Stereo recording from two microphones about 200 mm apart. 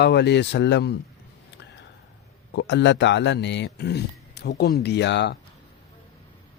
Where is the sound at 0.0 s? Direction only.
55° left (ahead or behind).